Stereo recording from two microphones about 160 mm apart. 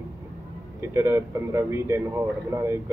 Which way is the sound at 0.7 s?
15° right (ahead or behind).